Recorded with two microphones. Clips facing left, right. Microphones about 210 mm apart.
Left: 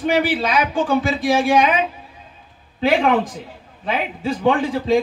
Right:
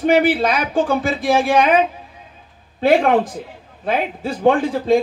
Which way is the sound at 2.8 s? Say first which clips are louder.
Right 3 dB; 50° right (ahead or behind).